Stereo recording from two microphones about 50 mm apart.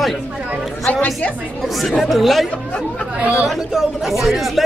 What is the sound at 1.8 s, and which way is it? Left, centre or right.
Speech, centre.